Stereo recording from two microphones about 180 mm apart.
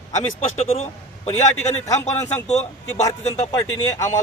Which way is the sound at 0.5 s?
35° left (ahead or behind).